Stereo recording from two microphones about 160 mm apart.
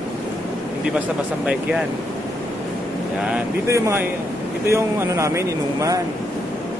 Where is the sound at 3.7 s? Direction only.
15° right (ahead or behind).